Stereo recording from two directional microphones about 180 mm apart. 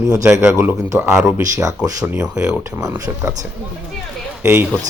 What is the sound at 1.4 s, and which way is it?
Speech, 20° right (ahead or behind).